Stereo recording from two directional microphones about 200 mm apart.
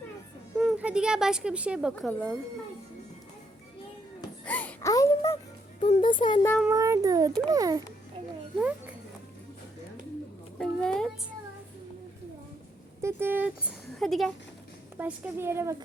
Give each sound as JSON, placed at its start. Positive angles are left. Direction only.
{"t": 0.6, "sound": "speech", "side_deg": -5}
{"t": 4.4, "sound": "music", "side_deg": 10}
{"t": 6.0, "sound": "speech", "side_deg": 25}
{"t": 6.7, "sound": "a woman's voice", "side_deg": -15}
{"t": 10.6, "sound": "a sound", "side_deg": 5}
{"t": 13.0, "sound": "a sound", "side_deg": -10}
{"t": 14.0, "sound": "speech", "side_deg": 0}
{"t": 14.9, "sound": "a woman's voice", "side_deg": -10}